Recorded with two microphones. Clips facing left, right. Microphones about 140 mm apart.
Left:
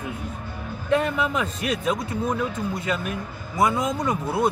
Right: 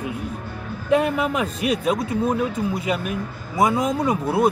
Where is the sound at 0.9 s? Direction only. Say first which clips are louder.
Right 3 dB; 10° right (ahead or behind).